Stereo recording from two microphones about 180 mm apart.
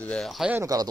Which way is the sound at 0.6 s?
20° right (ahead or behind).